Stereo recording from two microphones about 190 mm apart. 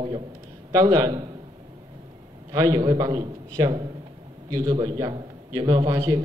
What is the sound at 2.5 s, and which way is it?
A man's voice, 20° right (ahead or behind).